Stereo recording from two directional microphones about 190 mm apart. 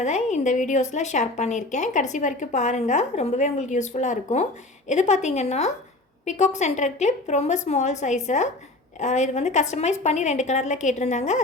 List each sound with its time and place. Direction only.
0.0 s a woman's voice: 40° left (ahead or behind)